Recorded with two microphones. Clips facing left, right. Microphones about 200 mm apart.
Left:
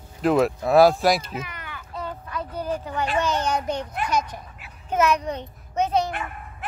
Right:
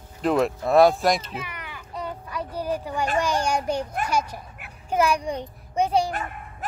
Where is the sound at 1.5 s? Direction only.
10° right (ahead or behind).